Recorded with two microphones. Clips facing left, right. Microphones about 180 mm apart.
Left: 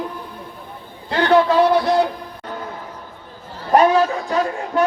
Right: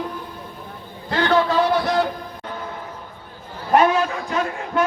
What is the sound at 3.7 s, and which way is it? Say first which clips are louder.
Speech: left 3 dB; 35° left (ahead or behind).